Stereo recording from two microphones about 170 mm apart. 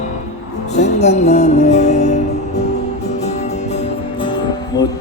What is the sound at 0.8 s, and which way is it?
Music, 40° left (ahead or behind).